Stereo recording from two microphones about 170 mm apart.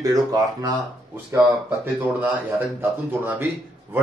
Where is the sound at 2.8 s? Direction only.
10° right (ahead or behind).